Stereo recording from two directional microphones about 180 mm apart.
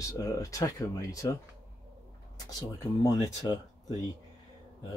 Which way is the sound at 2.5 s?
20° left (ahead or behind).